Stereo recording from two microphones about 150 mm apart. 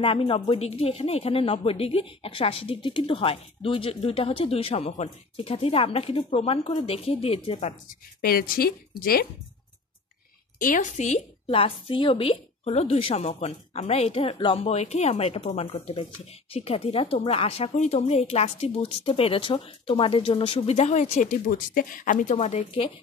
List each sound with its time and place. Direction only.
0.0 s speech: 40° left (ahead or behind)
8.2 s a woman's voice: 80° left
10.6 s speech: 60° left (ahead or behind); by 22.8 s 45° left (ahead or behind)